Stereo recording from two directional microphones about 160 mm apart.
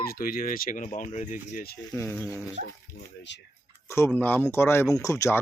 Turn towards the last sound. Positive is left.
turn(degrees=20)  # may be behind; listen again after turning